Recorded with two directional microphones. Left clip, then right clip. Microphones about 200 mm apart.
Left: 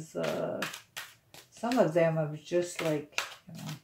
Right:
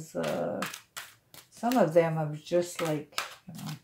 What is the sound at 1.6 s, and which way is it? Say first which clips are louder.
Speech: right 2 dB; 35° right (ahead or behind).